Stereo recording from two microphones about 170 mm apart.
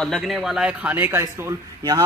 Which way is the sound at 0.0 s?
Centre (ahead or behind).